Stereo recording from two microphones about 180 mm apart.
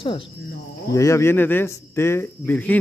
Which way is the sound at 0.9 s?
15° left (ahead or behind).